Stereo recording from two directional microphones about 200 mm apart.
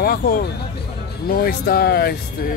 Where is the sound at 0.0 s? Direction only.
50° left (ahead or behind).